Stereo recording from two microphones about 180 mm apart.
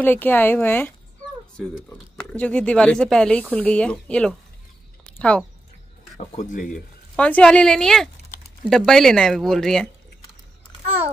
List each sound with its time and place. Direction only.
0.0 s speech: 10° left (ahead or behind)
2.3 s speech: 5° left (ahead or behind)
5.0 s a sound: 5° left (ahead or behind)
6.1 s speech: 45° left (ahead or behind)
6.7 s speech: 5° left (ahead or behind)